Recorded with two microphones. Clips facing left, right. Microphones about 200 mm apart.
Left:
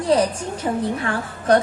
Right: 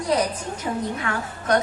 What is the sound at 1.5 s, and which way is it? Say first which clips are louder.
Speech: left 5 dB; 30° left (ahead or behind).